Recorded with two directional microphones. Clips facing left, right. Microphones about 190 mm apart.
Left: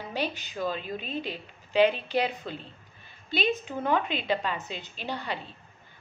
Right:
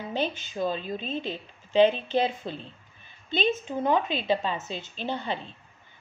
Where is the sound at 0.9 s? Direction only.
10° left (ahead or behind).